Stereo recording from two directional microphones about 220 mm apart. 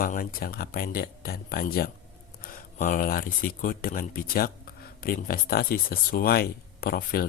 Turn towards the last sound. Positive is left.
turn(degrees=40)  # may be behind; listen again after turning